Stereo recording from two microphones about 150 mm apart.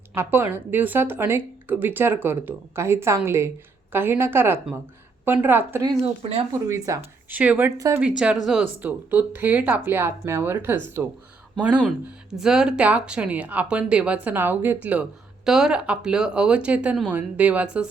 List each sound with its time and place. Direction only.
0.1 s a woman's voice: 15° right (ahead or behind)
7.3 s a woman's voice: 10° right (ahead or behind)
7.8 s speech: 20° right (ahead or behind)
8.0 s a woman's voice: 5° right (ahead or behind)